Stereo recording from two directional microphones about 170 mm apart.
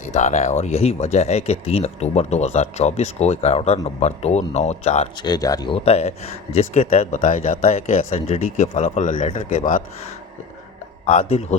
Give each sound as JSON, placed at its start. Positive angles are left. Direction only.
{"t": 0.0, "sound": "speech", "side_deg": 40}
{"t": 5.2, "sound": "speech", "side_deg": 20}
{"t": 9.5, "sound": "speech", "side_deg": 50}
{"t": 11.0, "sound": "speech", "side_deg": 40}